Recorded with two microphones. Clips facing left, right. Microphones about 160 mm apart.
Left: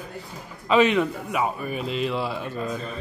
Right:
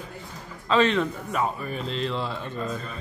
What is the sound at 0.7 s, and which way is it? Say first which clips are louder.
A man's voice: left 2 dB; 10° left (ahead or behind).